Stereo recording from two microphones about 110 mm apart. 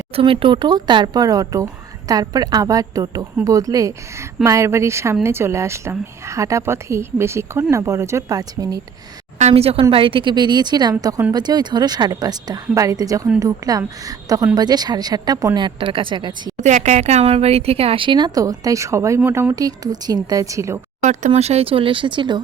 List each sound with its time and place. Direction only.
0.2 s speech: 55° right (ahead or behind); by 8.8 s 35° right (ahead or behind)
9.4 s speech: 70° right (ahead or behind)
9.9 s a woman's voice: 55° right (ahead or behind)
16.6 s speech: 90° right; by 20.8 s 25° right (ahead or behind)
21.0 s speech: 90° right; by 22.4 s 45° right (ahead or behind)